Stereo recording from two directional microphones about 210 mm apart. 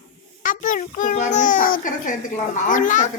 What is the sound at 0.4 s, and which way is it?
A child's voice, 40° left (ahead or behind).